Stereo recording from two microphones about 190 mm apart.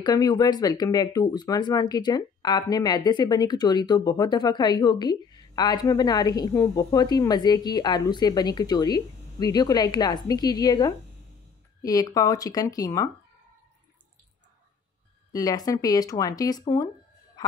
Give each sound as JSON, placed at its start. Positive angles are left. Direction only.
{"t": 0.0, "sound": "speech", "side_deg": 20}
{"t": 15.3, "sound": "speech", "side_deg": 20}